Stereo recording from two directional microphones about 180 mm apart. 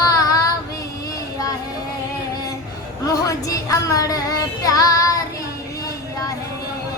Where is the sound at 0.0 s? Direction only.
20° left (ahead or behind).